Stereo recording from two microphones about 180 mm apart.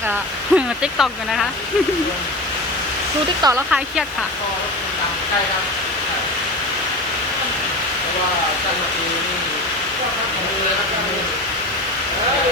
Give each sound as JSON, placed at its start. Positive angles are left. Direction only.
{"t": 0.5, "sound": "speech", "side_deg": -5}
{"t": 3.4, "sound": "speech", "side_deg": -25}